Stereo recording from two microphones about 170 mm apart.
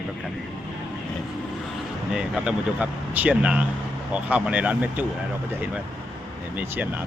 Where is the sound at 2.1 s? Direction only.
5° right (ahead or behind).